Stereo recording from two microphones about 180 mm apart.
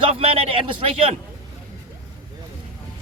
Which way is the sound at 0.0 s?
35° right (ahead or behind).